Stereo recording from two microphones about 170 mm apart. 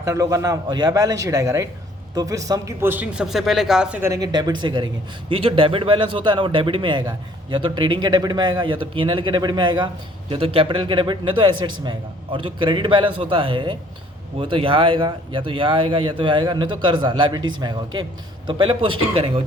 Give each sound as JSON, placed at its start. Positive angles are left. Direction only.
{"t": 0.0, "sound": "a man's voice", "side_deg": -20}
{"t": 4.0, "sound": "a man's voice", "side_deg": -20}